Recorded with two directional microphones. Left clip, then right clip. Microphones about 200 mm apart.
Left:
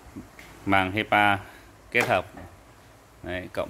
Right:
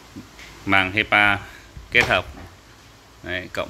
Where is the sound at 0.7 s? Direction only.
10° left (ahead or behind).